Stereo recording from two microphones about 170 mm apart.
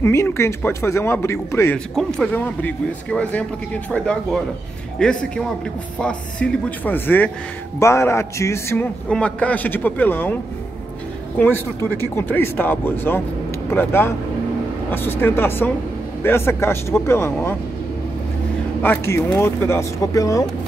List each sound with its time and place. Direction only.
0.0 s speech: 15° left (ahead or behind)
11.3 s speech: 10° left (ahead or behind)
18.8 s speech: 15° left (ahead or behind)